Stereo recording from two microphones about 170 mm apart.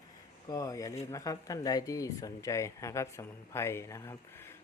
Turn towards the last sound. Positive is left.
turn(degrees=15)  # may be behind; listen again after turning